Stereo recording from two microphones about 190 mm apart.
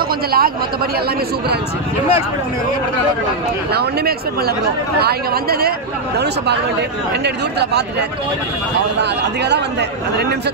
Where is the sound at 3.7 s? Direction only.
55° right (ahead or behind).